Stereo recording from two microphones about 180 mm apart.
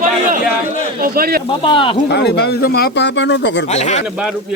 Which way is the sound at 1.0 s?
55° right (ahead or behind).